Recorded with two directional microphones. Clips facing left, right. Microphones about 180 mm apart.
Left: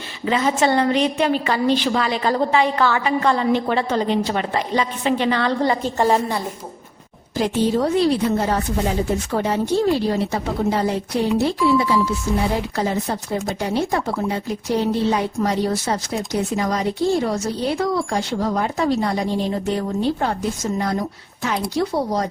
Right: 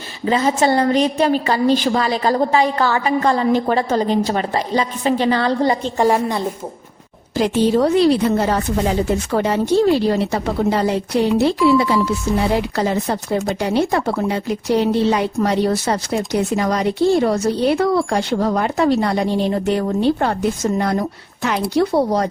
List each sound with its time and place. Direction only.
0.3 s a woman's voice: 35° right (ahead or behind)
6.0 s a woman's voice: 15° right (ahead or behind)
7.3 s a woman's voice: 85° right; by 22.3 s 65° right (ahead or behind)